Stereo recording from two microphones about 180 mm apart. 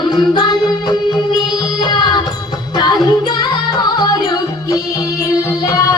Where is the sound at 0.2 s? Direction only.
25° left (ahead or behind).